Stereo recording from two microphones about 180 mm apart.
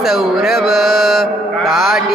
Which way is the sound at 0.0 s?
Centre (ahead or behind).